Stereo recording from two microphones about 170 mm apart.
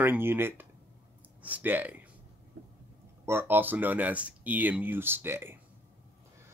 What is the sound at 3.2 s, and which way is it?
Speech, 15° right (ahead or behind).